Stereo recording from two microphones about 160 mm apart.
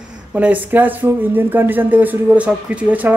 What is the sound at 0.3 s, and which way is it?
Speech, 10° right (ahead or behind).